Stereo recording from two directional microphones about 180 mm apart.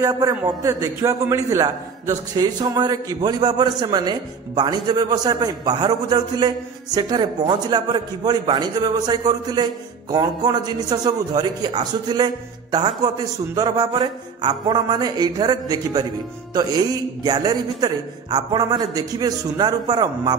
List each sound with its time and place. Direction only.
0.0 s a man's voice: 20° right (ahead or behind)